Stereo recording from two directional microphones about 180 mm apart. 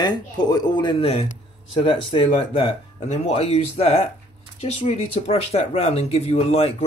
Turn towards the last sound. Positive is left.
turn(degrees=35)  # may be behind; listen again after turning